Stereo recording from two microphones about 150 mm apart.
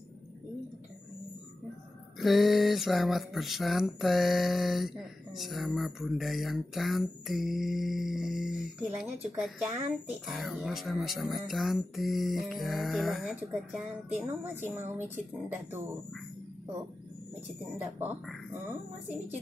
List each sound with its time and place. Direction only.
2.1 s speech: centre (ahead or behind)
10.2 s speech: centre (ahead or behind)
14.5 s speech: 15° right (ahead or behind)
17.7 s speech: 15° right (ahead or behind)